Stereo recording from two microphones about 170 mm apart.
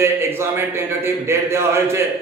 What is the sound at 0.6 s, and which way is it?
A man's voice, 15° right (ahead or behind).